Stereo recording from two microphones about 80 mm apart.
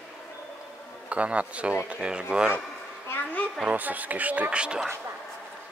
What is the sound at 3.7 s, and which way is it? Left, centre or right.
Speech, right.